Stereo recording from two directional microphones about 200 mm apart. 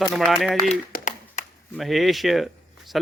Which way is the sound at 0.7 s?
40° left (ahead or behind).